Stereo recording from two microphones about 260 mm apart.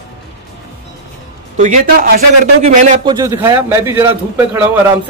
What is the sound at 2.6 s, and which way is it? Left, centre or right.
A man's voice, right.